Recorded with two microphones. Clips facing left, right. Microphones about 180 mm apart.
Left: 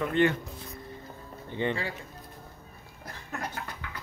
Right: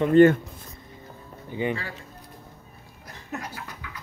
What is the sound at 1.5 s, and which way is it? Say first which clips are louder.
Speech: right 2 dB; 10° right (ahead or behind).